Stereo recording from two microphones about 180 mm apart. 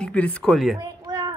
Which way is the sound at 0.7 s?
20° right (ahead or behind).